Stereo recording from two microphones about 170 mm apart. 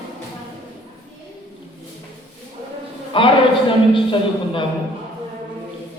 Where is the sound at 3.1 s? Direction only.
30° left (ahead or behind).